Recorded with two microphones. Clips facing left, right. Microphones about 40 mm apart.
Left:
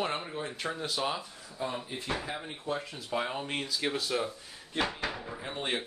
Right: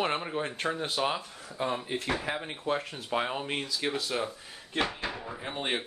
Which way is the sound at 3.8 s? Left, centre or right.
Centre.